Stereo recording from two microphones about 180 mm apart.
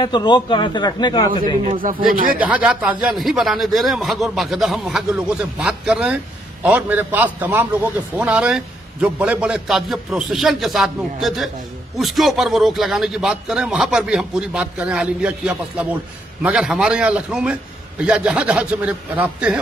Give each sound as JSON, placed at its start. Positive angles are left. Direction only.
{"t": 0.0, "sound": "a man's voice", "side_deg": 25}
{"t": 1.6, "sound": "speech", "side_deg": -40}
{"t": 2.4, "sound": "a man's voice", "side_deg": -5}